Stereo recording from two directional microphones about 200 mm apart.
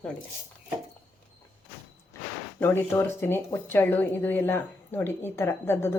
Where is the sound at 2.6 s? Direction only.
10° left (ahead or behind).